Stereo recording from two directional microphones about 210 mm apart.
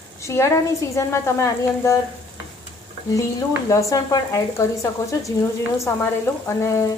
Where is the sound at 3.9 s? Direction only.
15° left (ahead or behind).